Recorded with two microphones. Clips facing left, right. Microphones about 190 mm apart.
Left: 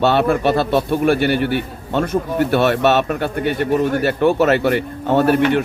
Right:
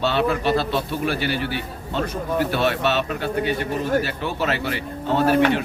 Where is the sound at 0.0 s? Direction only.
55° left (ahead or behind).